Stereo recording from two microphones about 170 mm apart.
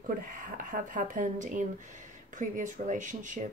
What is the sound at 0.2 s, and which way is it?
Speech, 50° right (ahead or behind).